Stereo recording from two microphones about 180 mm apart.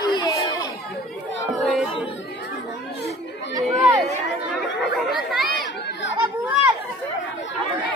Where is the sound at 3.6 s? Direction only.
Centre (ahead or behind).